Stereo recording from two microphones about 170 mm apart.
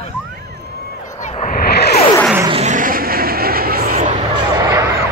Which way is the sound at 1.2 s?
40° left (ahead or behind).